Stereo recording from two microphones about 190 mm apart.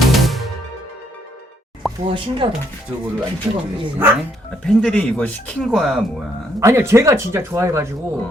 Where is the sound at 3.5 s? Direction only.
15° right (ahead or behind).